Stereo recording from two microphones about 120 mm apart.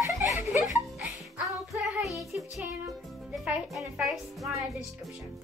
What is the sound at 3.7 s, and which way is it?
Speech, centre (ahead or behind).